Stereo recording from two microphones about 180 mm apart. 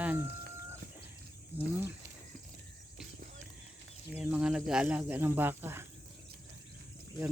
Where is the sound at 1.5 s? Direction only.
10° right (ahead or behind).